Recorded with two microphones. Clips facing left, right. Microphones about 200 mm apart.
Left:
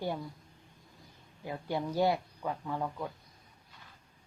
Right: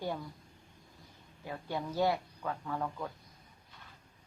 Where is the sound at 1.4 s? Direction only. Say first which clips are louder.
Left 3 dB; 20° left (ahead or behind).